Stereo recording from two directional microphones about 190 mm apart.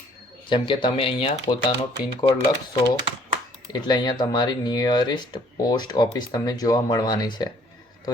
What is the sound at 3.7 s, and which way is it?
Speech, 20° left (ahead or behind).